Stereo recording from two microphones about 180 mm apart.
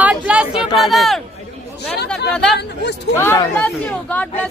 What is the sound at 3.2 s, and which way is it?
Speech, 10° left (ahead or behind).